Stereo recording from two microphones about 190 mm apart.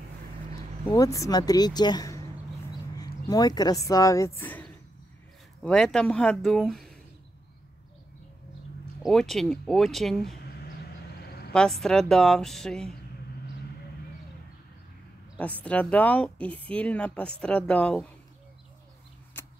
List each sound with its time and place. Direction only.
0.5 s a woman's voice: 20° left (ahead or behind)
5.6 s a woman's voice: 5° left (ahead or behind)
9.0 s a woman's voice: centre (ahead or behind)
11.5 s a woman's voice: centre (ahead or behind)
15.3 s speech: 5° left (ahead or behind)
19.4 s shuffling cards: 10° left (ahead or behind)